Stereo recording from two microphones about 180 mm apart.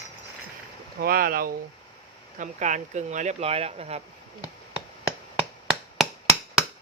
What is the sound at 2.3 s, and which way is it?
Speech, 45° right (ahead or behind).